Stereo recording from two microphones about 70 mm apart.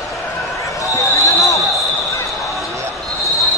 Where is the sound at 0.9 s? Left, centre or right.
Left.